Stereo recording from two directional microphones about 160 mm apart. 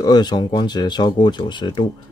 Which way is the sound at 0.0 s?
25° left (ahead or behind).